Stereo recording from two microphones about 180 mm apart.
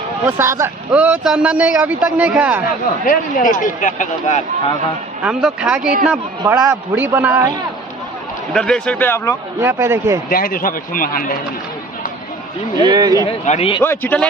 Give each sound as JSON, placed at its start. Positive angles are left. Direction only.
{"t": 0.2, "sound": "a man's voice", "side_deg": -15}
{"t": 3.1, "sound": "speech", "side_deg": 50}
{"t": 5.2, "sound": "speech", "side_deg": -5}
{"t": 6.4, "sound": "a man's voice", "side_deg": -15}
{"t": 8.5, "sound": "a man's voice", "side_deg": 5}
{"t": 9.6, "sound": "a man's voice", "side_deg": -15}
{"t": 10.3, "sound": "speech", "side_deg": 55}
{"t": 12.7, "sound": "speech", "side_deg": -20}
{"t": 13.5, "sound": "a man's voice", "side_deg": 30}
{"t": 13.8, "sound": "a man's voice", "side_deg": 10}